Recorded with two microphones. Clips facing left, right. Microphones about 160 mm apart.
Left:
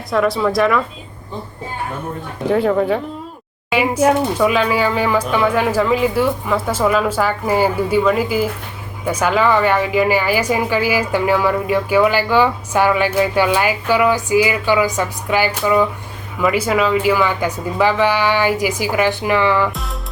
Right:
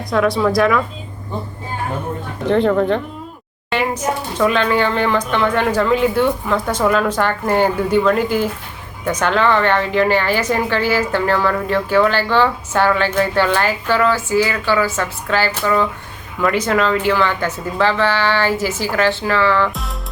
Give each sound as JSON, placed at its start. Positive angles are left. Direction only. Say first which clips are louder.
{"t": 0.1, "sound": "speech", "louder": "right 1 dB", "side_deg": 0}
{"t": 2.5, "sound": "a woman's voice", "louder": "right 1 dB", "side_deg": 5}